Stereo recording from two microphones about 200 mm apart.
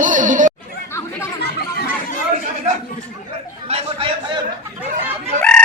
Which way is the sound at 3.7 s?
30° right (ahead or behind).